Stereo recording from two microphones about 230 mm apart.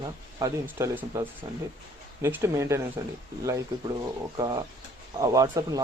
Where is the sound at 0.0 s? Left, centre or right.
Centre.